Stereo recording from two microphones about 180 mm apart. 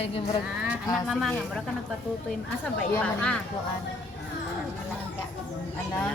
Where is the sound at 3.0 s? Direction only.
5° left (ahead or behind).